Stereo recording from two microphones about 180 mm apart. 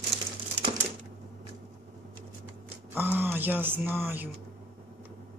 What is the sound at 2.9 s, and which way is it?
Speech, 10° right (ahead or behind).